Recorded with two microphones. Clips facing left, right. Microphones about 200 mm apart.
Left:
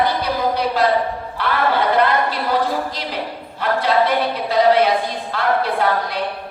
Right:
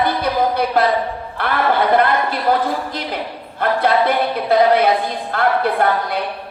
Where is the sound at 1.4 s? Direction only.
55° right (ahead or behind).